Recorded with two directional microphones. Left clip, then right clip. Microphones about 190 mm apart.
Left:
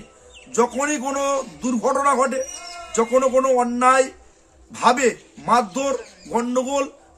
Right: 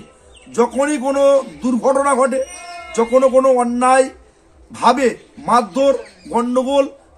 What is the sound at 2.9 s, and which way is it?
Speech, 30° left (ahead or behind).